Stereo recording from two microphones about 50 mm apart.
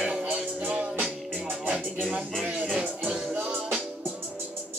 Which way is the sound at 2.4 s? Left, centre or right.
Right.